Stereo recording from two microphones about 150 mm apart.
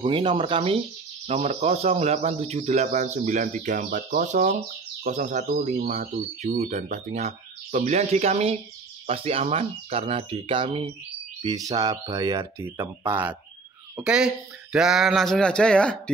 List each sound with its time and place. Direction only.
0.0 s speech: 35° right (ahead or behind)
13.0 s speech: 10° right (ahead or behind); by 16.0 s 5° left (ahead or behind)